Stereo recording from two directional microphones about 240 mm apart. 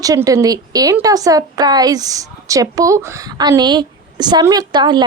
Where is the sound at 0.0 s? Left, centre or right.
Centre.